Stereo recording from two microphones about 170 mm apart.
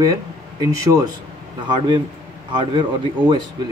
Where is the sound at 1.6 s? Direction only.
25° right (ahead or behind).